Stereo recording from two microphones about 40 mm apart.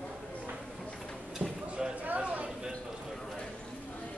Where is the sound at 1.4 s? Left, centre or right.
Right.